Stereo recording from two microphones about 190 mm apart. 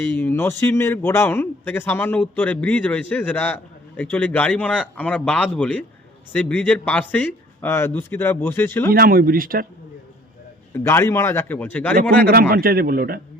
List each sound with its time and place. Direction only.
0.0 s a man's voice: 10° left (ahead or behind)
8.9 s a man's voice: 50° right (ahead or behind)
10.8 s a man's voice: 15° left (ahead or behind)
12.2 s a man's voice: 50° right (ahead or behind)